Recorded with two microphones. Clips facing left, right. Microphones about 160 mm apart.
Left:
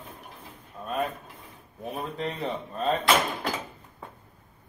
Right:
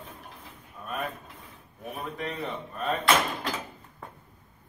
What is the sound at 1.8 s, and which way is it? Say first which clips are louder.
A man's voice: left 3 dB; 30° left (ahead or behind).